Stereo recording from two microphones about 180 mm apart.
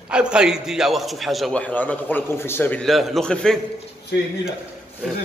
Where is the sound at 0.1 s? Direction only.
5° right (ahead or behind).